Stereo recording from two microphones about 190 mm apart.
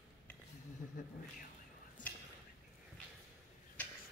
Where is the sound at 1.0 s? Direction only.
40° left (ahead or behind).